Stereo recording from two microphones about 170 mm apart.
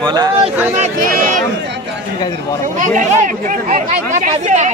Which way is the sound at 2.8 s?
50° right (ahead or behind).